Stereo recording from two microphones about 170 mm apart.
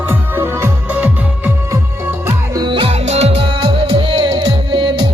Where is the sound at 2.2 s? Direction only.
25° right (ahead or behind).